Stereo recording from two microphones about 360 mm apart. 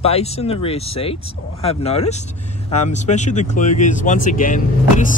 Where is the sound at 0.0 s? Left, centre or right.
Centre.